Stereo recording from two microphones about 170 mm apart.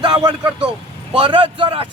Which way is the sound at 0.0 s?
25° right (ahead or behind).